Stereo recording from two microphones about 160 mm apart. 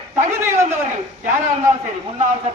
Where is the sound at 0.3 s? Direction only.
15° right (ahead or behind).